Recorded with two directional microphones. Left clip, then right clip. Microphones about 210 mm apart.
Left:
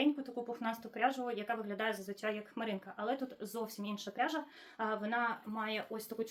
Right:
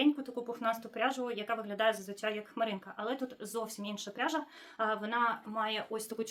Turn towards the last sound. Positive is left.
turn(degrees=-20)  # may be behind; listen again after turning